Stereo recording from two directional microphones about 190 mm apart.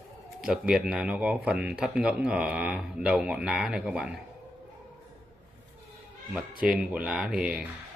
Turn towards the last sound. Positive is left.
turn(degrees=-5)  # may be behind; listen again after turning